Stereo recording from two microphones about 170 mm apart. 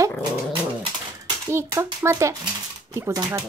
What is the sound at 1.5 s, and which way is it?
Speech, 15° right (ahead or behind).